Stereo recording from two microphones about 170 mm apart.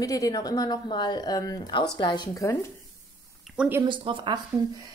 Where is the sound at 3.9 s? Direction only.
30° right (ahead or behind).